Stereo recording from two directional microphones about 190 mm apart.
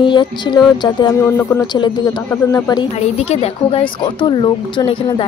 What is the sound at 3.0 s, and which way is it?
Speech, 35° left (ahead or behind).